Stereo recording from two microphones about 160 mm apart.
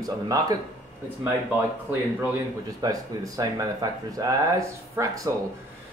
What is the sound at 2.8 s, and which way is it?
Speech, 25° right (ahead or behind).